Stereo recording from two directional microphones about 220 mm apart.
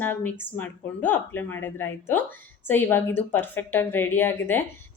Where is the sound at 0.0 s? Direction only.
10° left (ahead or behind).